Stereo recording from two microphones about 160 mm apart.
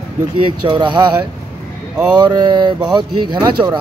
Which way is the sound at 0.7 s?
30° right (ahead or behind).